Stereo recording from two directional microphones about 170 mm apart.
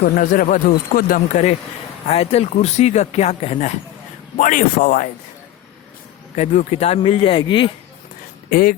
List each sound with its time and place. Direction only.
0.0 s speech: 55° left (ahead or behind)
2.0 s speech: 35° left (ahead or behind)
4.4 s a man's voice: 50° left (ahead or behind)
6.3 s speech: 40° left (ahead or behind)
8.4 s speech: 60° left (ahead or behind)